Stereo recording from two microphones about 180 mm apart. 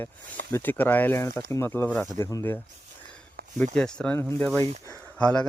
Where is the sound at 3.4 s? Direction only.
60° right (ahead or behind).